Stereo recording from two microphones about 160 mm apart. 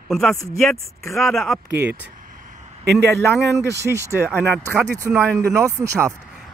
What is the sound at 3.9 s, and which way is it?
Speech, 15° right (ahead or behind).